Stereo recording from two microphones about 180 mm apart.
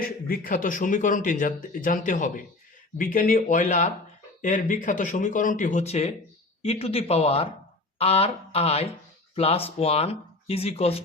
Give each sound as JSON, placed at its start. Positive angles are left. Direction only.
{"t": 0.0, "sound": "speech", "side_deg": 55}